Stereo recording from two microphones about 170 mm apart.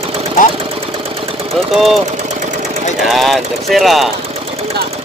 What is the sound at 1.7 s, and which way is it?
Speech, centre (ahead or behind).